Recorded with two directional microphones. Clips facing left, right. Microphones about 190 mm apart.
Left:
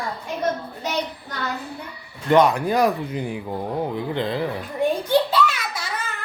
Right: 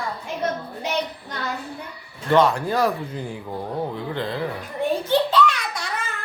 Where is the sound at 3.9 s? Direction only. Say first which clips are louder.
Left 3 dB; 20° left (ahead or behind).